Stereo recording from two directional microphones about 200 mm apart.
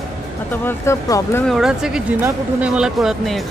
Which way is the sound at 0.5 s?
10° left (ahead or behind).